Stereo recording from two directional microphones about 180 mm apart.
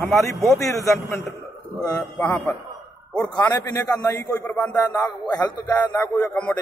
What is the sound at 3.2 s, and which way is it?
A man's voice, 20° left (ahead or behind).